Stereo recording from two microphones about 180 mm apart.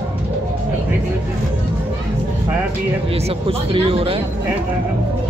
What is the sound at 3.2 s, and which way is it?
Speech, 30° right (ahead or behind).